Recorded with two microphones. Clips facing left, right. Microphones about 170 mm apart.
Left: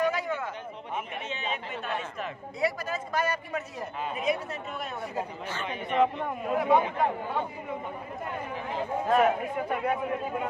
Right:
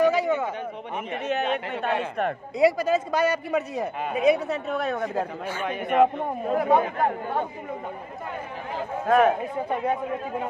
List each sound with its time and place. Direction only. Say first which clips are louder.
0.0 s a sound: right 7 dB; 80° right
1.2 s a man's voice: right 9 dB; 70° right (ahead or behind)
6.2 s speech: right 4 dB; 35° right (ahead or behind)
6.6 s speech: right 2 dB; 50° right (ahead or behind)
9.0 s a man's voice: right 4 dB; 55° right (ahead or behind)